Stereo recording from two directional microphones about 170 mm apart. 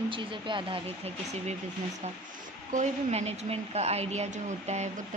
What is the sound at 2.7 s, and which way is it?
Speech, 40° right (ahead or behind).